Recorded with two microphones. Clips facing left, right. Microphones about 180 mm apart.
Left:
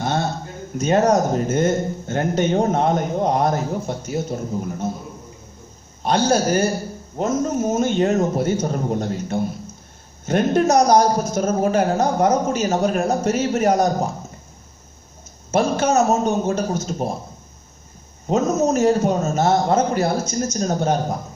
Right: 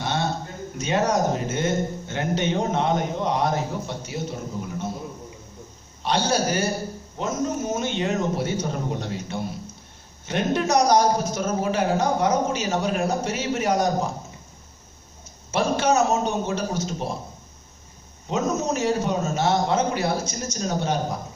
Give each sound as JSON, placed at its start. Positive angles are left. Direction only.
{"t": 0.0, "sound": "a sound", "side_deg": 45}
{"t": 0.7, "sound": "speech", "side_deg": 45}
{"t": 6.0, "sound": "speech", "side_deg": 45}
{"t": 15.5, "sound": "speech", "side_deg": 45}
{"t": 18.2, "sound": "speech", "side_deg": 45}